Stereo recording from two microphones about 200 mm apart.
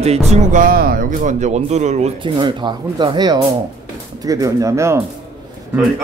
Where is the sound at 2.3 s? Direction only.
25° right (ahead or behind).